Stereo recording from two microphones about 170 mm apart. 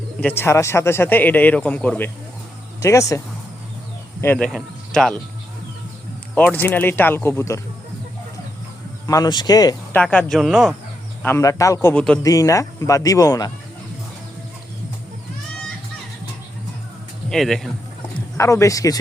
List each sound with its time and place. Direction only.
0.2 s speech: 10° left (ahead or behind)
4.2 s speech: 10° left (ahead or behind)
6.3 s speech: 10° left (ahead or behind)
9.0 s speech: 20° left (ahead or behind)
9.9 s speech: 5° left (ahead or behind)
11.2 s speech: 15° left (ahead or behind)
11.9 s speech: 5° left (ahead or behind)
12.2 s speech: 20° left (ahead or behind)
17.2 s speech: centre (ahead or behind)
18.3 s speech: 15° left (ahead or behind)